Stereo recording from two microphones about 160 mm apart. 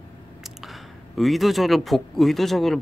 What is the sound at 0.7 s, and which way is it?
Speech, centre (ahead or behind).